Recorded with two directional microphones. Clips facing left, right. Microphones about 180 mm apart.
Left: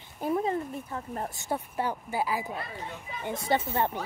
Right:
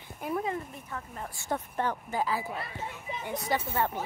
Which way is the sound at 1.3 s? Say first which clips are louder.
Left 1 dB; 15° left (ahead or behind).